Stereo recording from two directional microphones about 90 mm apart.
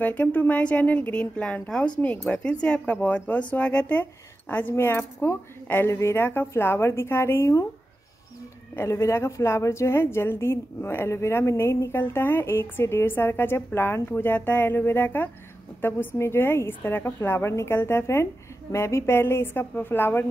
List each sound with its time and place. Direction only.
0.0 s speech: 20° left (ahead or behind)
8.7 s speech: 30° left (ahead or behind)